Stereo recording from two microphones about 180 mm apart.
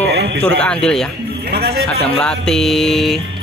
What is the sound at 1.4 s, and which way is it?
Speech, 60° right (ahead or behind).